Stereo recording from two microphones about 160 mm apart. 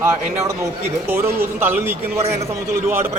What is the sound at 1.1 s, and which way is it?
A man's voice, 15° right (ahead or behind).